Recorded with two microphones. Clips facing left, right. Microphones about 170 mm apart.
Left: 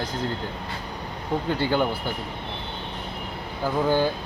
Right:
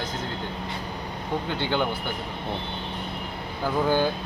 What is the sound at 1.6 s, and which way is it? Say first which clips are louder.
Speech: left 3 dB; 5° left (ahead or behind).